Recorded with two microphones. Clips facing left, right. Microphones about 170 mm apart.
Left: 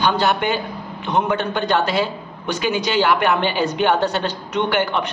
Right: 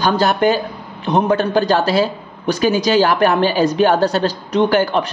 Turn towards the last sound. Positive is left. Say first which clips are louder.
# right 5 dB
turn(degrees=-35)  # may be behind; listen again after turning